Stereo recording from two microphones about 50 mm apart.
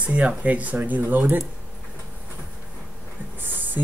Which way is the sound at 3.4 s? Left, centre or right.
Right.